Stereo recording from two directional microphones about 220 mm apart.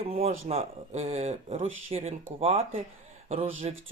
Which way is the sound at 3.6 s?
30° right (ahead or behind).